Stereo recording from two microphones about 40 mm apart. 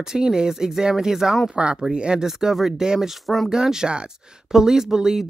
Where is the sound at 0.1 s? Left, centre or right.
Centre.